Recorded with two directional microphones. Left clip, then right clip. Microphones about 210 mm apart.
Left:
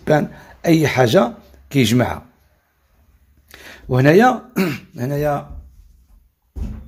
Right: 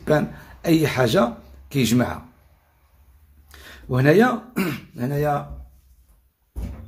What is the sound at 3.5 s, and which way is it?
Speech, 35° left (ahead or behind).